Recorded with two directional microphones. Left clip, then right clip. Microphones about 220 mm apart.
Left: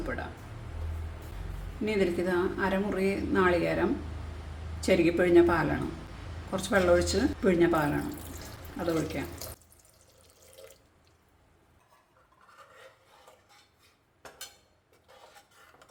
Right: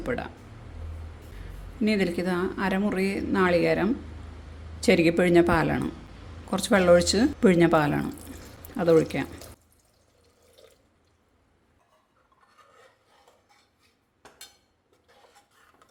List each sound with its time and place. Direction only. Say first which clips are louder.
1.8 s a woman's voice: right 2 dB; 35° right (ahead or behind)